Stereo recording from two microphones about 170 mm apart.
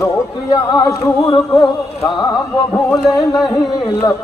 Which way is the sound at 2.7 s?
20° left (ahead or behind).